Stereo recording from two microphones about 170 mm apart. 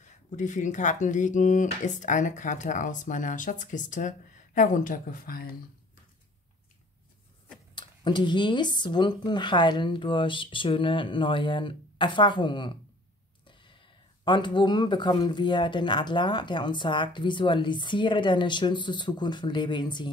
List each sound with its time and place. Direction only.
0.0 s speech: 45° left (ahead or behind)
7.7 s speech: 25° left (ahead or behind)